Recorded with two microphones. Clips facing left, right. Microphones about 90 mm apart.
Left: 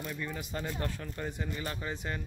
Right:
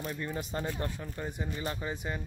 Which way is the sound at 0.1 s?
30° right (ahead or behind).